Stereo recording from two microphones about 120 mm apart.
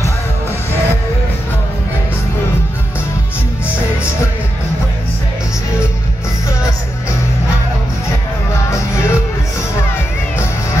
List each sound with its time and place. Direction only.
8.6 s music: 20° left (ahead or behind)